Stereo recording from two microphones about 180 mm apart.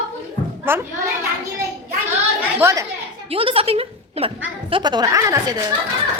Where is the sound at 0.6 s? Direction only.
10° right (ahead or behind).